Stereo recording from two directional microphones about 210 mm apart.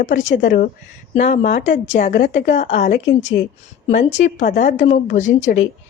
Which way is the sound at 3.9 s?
35° left (ahead or behind).